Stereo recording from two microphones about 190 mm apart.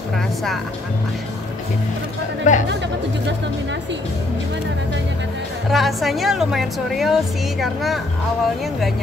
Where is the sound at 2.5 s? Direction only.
40° left (ahead or behind).